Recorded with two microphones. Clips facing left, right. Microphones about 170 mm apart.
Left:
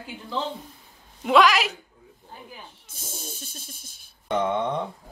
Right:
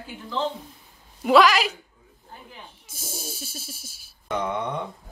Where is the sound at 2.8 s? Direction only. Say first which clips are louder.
Right 4 dB; 10° right (ahead or behind).